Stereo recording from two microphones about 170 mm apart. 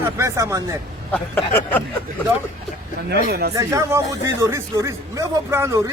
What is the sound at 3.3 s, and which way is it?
Speech, 65° right (ahead or behind).